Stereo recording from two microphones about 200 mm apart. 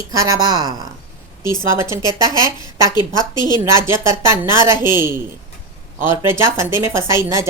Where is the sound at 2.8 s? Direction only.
20° left (ahead or behind).